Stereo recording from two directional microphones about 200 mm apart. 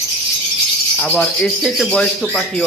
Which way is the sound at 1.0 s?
5° left (ahead or behind).